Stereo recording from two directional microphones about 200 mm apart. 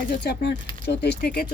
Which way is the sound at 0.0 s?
55° left (ahead or behind).